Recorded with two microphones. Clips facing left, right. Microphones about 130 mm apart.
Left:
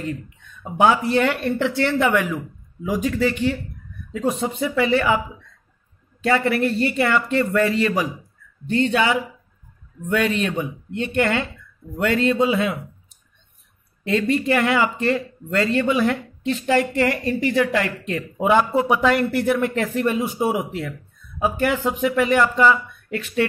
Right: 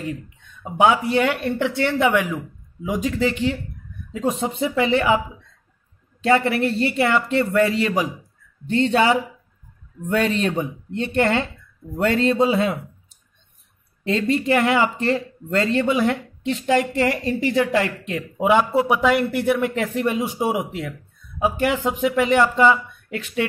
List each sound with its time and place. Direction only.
0.0 s speech: 15° right (ahead or behind)
6.2 s speech: 20° right (ahead or behind)
8.6 s speech: 30° right (ahead or behind)
14.0 s speech: 25° right (ahead or behind)